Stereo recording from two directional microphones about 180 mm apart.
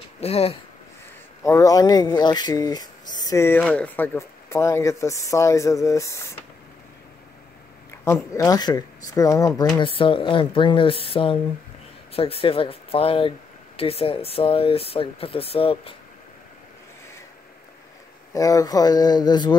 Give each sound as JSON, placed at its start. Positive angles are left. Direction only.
{"t": 0.2, "sound": "speech", "side_deg": 35}
{"t": 1.4, "sound": "speech", "side_deg": 15}
{"t": 8.0, "sound": "speech", "side_deg": 15}
{"t": 9.8, "sound": "speech", "side_deg": 30}
{"t": 18.3, "sound": "speech", "side_deg": 20}